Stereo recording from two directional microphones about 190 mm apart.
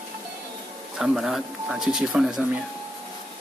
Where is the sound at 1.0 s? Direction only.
Centre (ahead or behind).